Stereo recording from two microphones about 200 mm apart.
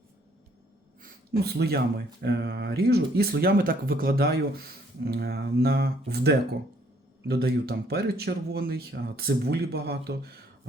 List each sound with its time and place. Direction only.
1.0 s speech: 50° right (ahead or behind)
7.3 s speech: 50° right (ahead or behind)